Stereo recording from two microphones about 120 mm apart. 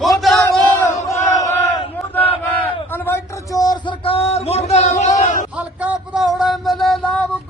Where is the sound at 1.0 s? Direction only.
25° left (ahead or behind).